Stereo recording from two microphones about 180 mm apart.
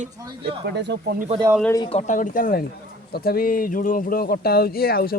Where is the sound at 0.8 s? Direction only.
70° right (ahead or behind).